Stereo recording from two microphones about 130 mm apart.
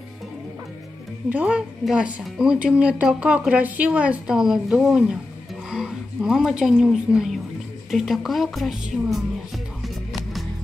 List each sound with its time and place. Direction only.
1.3 s a woman's voice: 10° right (ahead or behind)